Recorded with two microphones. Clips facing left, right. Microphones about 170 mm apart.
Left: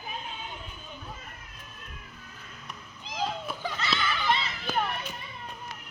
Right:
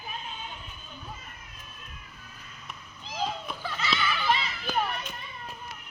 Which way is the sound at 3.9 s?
10° right (ahead or behind).